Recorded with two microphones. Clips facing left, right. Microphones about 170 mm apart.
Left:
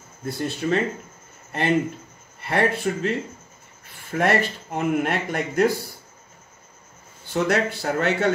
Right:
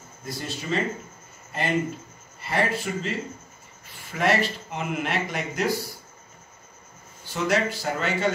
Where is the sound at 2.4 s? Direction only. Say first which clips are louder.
Left 3 dB; 60° left (ahead or behind).